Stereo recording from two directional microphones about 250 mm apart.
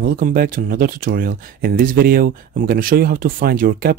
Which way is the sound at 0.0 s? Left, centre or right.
Right.